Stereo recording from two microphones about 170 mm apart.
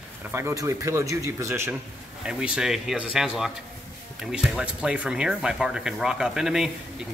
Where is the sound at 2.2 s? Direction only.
5° right (ahead or behind).